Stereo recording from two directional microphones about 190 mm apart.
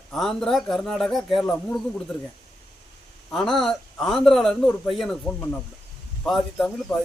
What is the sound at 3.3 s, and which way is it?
Speech, centre (ahead or behind).